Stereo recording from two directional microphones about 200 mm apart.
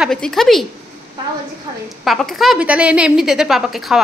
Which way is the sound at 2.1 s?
Centre (ahead or behind).